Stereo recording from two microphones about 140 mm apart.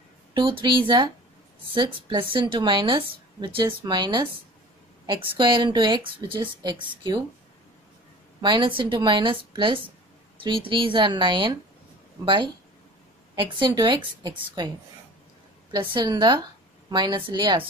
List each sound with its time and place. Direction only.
0.3 s a woman's voice: 35° right (ahead or behind)
8.4 s a woman's voice: 35° right (ahead or behind)
13.4 s a woman's voice: 35° right (ahead or behind)
15.7 s a woman's voice: 30° right (ahead or behind)